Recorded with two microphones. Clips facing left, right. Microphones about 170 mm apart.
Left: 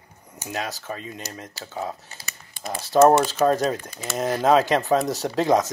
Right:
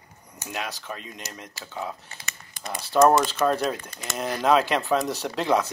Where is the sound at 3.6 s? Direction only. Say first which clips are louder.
Left 3 dB; 35° left (ahead or behind).